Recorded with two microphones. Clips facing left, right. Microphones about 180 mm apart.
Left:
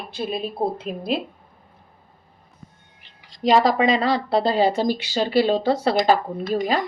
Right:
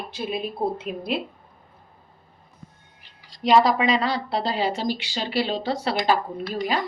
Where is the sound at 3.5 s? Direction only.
45° left (ahead or behind).